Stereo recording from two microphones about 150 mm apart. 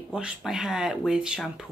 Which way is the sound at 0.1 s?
5° right (ahead or behind).